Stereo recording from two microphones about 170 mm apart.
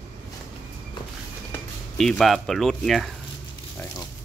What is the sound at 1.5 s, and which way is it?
Speech, 5° left (ahead or behind).